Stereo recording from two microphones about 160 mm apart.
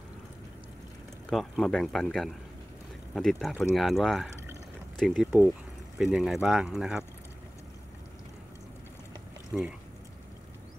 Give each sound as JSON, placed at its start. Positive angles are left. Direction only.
{"t": 1.3, "sound": "speech", "side_deg": 0}
{"t": 9.5, "sound": "speech", "side_deg": 0}